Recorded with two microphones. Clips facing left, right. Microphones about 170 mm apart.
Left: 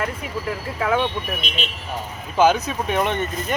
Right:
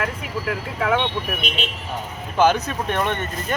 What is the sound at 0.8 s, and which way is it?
Speech, centre (ahead or behind).